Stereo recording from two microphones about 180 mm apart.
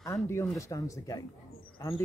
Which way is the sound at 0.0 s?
15° left (ahead or behind).